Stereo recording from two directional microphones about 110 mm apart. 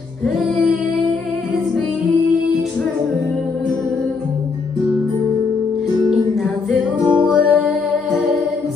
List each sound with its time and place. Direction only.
6.7 s music: 10° right (ahead or behind)